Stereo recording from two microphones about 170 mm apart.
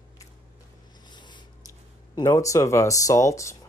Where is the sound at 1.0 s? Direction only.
25° left (ahead or behind).